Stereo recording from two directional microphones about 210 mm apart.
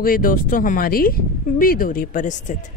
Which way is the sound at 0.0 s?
40° left (ahead or behind).